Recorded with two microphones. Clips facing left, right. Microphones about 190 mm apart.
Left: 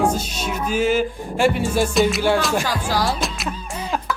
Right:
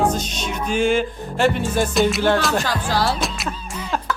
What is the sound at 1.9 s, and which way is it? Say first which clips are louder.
Speech: right 1 dB; centre (ahead or behind).